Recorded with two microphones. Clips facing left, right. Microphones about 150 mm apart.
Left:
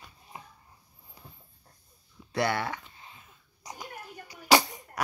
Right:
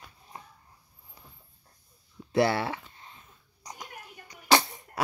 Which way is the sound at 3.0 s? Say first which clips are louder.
Even; 10° left (ahead or behind).